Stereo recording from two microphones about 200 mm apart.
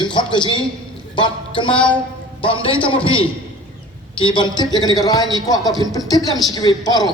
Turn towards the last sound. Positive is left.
turn(degrees=20)  # may be behind; listen again after turning